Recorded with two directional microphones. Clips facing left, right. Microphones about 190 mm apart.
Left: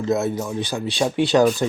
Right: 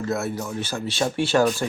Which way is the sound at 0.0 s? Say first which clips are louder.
Left 5 dB; 20° left (ahead or behind).